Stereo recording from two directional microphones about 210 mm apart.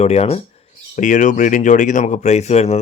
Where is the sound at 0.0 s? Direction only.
30° left (ahead or behind).